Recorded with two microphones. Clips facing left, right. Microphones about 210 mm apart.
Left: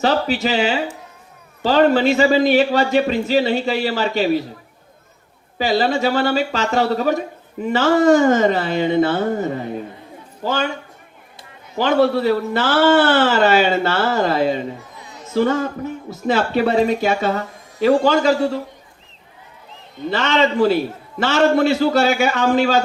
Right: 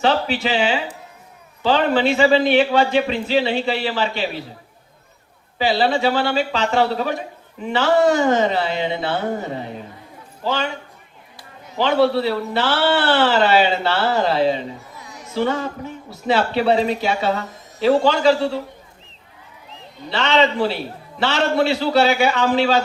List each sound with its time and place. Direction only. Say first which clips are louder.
0.0 s a man's voice: left 1 dB; 40° left (ahead or behind)
5.5 s a man's voice: left 1 dB; 45° left (ahead or behind)
11.8 s a man's voice: left 1 dB; 45° left (ahead or behind)
20.1 s a man's voice: even; 45° left (ahead or behind)